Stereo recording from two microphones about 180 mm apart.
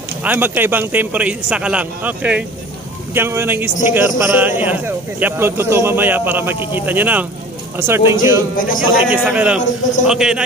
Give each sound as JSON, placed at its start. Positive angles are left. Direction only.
{"t": 0.2, "sound": "a man's voice", "side_deg": -10}
{"t": 8.5, "sound": "speech", "side_deg": 50}
{"t": 9.0, "sound": "a man's voice", "side_deg": -5}